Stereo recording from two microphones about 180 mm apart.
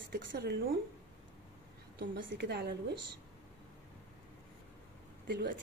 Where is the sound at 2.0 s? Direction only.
75° right (ahead or behind).